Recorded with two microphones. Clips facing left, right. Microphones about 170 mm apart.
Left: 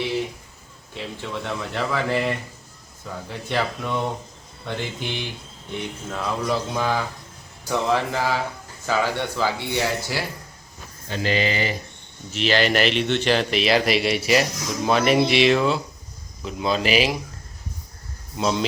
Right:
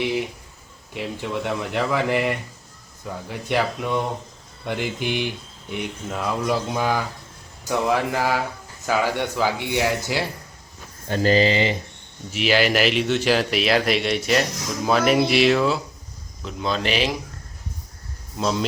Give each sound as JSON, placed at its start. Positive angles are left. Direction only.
{"t": 0.9, "sound": "speech", "side_deg": -15}
{"t": 3.5, "sound": "speech", "side_deg": -10}
{"t": 11.1, "sound": "speech", "side_deg": -40}
{"t": 12.3, "sound": "speech", "side_deg": -10}
{"t": 18.3, "sound": "speech", "side_deg": 0}